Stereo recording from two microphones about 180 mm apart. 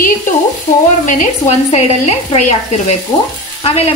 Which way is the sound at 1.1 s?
45° left (ahead or behind).